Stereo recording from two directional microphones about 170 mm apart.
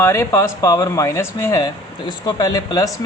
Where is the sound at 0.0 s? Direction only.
15° left (ahead or behind).